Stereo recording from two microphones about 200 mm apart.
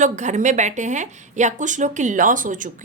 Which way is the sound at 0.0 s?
35° right (ahead or behind).